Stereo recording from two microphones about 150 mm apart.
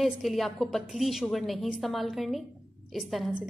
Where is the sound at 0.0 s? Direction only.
Centre (ahead or behind).